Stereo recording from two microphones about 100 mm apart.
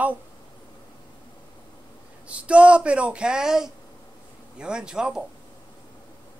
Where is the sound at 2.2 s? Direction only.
10° right (ahead or behind).